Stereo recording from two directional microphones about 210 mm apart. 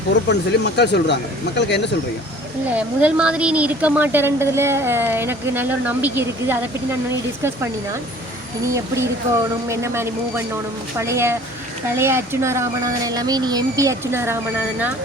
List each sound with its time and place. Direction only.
0.1 s speech: 55° left (ahead or behind)
2.7 s speech: 5° right (ahead or behind)
8.6 s speech: 15° right (ahead or behind)